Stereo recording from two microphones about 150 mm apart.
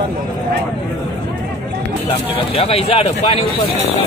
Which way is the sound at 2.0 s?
40° left (ahead or behind).